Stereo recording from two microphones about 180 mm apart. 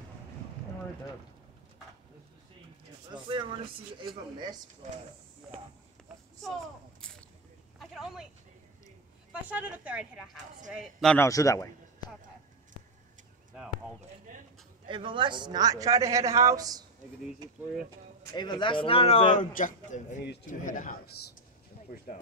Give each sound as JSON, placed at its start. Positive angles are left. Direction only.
{"t": 3.1, "sound": "a man's voice", "side_deg": -25}
{"t": 7.0, "sound": "a sound", "side_deg": 5}
{"t": 7.8, "sound": "speech", "side_deg": 0}
{"t": 9.3, "sound": "a man's voice", "side_deg": -10}
{"t": 11.1, "sound": "a man's voice", "side_deg": 20}
{"t": 14.9, "sound": "a man's voice", "side_deg": -25}
{"t": 18.3, "sound": "a man's voice", "side_deg": 25}
{"t": 21.7, "sound": "a sound", "side_deg": 50}